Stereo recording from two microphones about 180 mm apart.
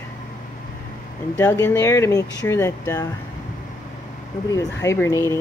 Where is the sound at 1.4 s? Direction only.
10° left (ahead or behind).